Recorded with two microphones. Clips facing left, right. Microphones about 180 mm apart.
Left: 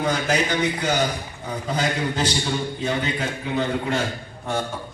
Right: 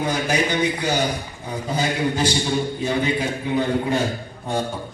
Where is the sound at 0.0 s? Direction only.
10° right (ahead or behind).